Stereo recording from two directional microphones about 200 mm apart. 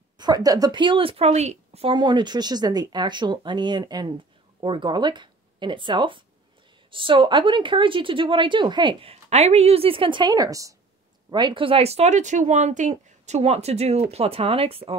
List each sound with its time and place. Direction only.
0.2 s a woman's voice: 20° right (ahead or behind)